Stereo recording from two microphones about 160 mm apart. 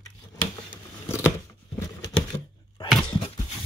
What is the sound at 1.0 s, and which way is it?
Scissors, 15° left (ahead or behind).